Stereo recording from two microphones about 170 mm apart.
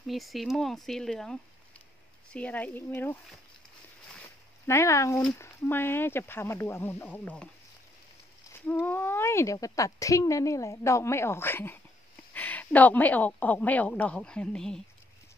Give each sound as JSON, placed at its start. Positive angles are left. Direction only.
{"t": 0.0, "sound": "speech", "side_deg": 0}
{"t": 4.6, "sound": "speech", "side_deg": 15}
{"t": 8.5, "sound": "speech", "side_deg": 10}